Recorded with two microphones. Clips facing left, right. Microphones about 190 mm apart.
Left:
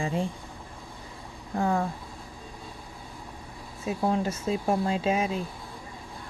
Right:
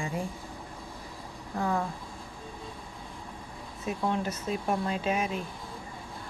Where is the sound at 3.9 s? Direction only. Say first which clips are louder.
Left 3 dB; 30° left (ahead or behind).